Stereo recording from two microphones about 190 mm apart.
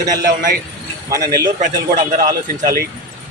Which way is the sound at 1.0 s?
15° right (ahead or behind).